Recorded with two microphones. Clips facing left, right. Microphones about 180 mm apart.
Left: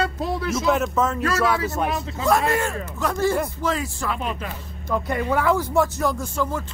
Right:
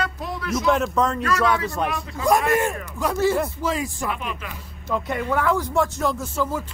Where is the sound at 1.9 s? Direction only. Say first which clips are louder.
Left 2 dB; 25° left (ahead or behind).